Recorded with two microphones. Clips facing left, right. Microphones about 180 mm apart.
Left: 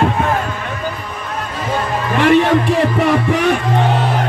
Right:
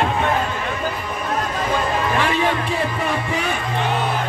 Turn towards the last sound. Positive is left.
turn(degrees=75)  # may be behind; listen again after turning